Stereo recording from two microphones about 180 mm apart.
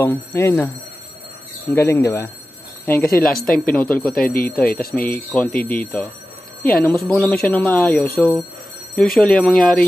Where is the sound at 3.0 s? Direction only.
55° left (ahead or behind).